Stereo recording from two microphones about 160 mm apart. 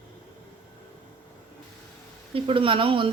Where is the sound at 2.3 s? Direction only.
35° right (ahead or behind).